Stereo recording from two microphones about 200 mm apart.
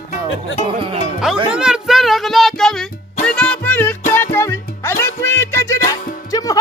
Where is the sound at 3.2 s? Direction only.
5° left (ahead or behind).